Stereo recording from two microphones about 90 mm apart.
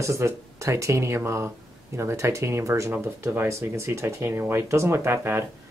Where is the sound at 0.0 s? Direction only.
35° right (ahead or behind).